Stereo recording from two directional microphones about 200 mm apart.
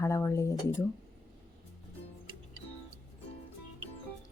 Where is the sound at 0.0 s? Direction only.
15° left (ahead or behind).